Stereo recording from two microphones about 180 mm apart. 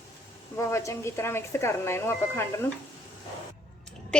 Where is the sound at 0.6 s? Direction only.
15° left (ahead or behind).